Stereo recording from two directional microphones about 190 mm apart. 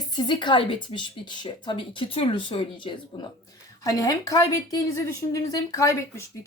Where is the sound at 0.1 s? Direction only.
25° left (ahead or behind).